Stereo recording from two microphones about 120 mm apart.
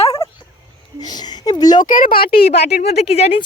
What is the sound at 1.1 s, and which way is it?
A woman's voice, 35° left (ahead or behind).